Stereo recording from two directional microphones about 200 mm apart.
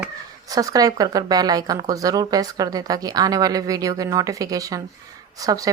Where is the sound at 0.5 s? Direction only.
20° right (ahead or behind).